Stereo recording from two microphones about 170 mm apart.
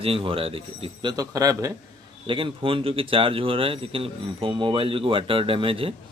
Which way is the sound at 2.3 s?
30° right (ahead or behind).